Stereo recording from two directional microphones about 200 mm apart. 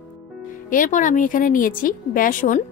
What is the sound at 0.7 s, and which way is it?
A woman's voice, 40° left (ahead or behind).